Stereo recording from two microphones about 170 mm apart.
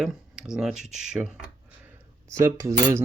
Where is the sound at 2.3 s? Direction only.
20° right (ahead or behind).